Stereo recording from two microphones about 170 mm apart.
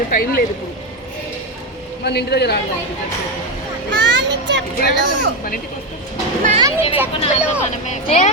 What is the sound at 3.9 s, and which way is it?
Children playing, 90° right.